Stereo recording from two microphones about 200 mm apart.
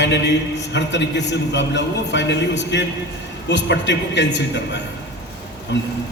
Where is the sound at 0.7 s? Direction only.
60° left (ahead or behind).